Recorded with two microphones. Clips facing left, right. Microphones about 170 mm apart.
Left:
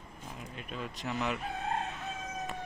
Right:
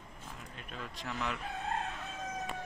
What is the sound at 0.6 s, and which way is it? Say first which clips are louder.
Speech: left 5 dB; 15° left (ahead or behind).